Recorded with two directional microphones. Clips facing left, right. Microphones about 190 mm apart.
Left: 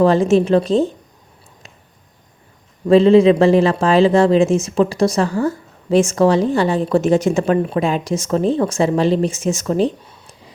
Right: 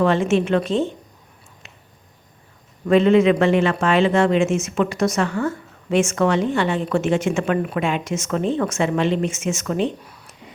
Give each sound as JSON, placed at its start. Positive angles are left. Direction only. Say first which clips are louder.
{"t": 0.0, "sound": "speech", "louder": "left 5 dB", "side_deg": 35}
{"t": 2.8, "sound": "speech", "louder": "left 5 dB", "side_deg": 30}